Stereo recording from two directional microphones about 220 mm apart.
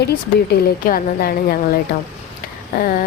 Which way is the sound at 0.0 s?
45° left (ahead or behind).